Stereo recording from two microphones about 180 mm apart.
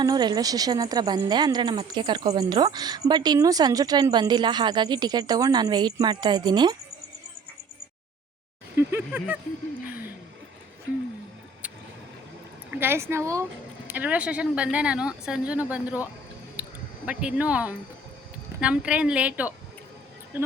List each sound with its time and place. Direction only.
0.0 s speech: 20° right (ahead or behind)
8.7 s speech: 10° right (ahead or behind)
12.7 s speech: 10° right (ahead or behind)
16.6 s a sound: 10° right (ahead or behind)
17.1 s speech: 5° right (ahead or behind)
20.3 s cricket: 10° right (ahead or behind)